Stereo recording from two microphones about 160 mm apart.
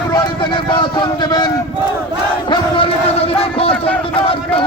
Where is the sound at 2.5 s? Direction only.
35° left (ahead or behind).